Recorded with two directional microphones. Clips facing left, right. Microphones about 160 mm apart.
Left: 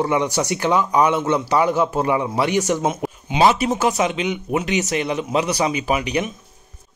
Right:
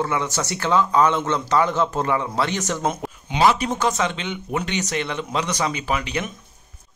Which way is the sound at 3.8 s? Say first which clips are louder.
Left 3 dB; 15° left (ahead or behind).